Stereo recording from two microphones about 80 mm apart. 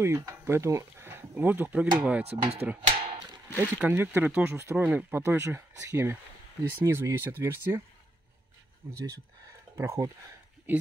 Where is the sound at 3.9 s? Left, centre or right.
Right.